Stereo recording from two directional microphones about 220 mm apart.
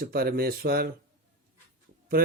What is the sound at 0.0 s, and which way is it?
Speech, 45° right (ahead or behind).